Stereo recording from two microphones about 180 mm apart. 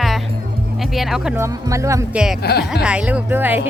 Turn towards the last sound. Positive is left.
turn(degrees=-10)  # may be behind; listen again after turning